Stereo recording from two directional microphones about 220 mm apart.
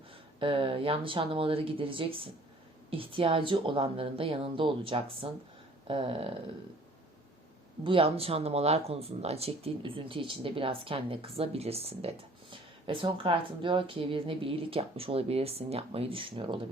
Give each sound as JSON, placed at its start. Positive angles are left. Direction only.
{"t": 0.3, "sound": "speech", "side_deg": -25}
{"t": 7.9, "sound": "speech", "side_deg": -25}